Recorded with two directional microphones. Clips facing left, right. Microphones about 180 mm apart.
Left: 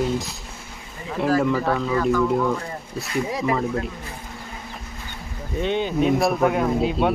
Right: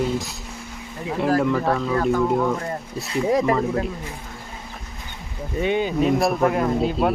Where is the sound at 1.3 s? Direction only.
Centre (ahead or behind).